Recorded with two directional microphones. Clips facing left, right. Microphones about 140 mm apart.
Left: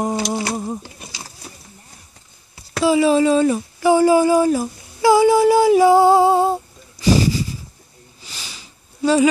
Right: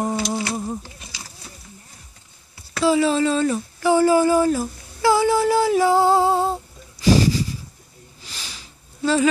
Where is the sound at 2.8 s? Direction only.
10° left (ahead or behind).